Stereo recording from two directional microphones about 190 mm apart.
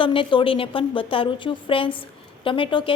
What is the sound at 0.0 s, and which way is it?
A woman's voice, 25° left (ahead or behind).